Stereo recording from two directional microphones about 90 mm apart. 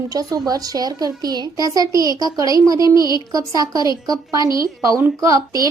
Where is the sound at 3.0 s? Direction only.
50° left (ahead or behind).